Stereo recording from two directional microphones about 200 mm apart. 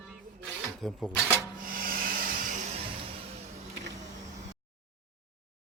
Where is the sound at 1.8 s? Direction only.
45° right (ahead or behind).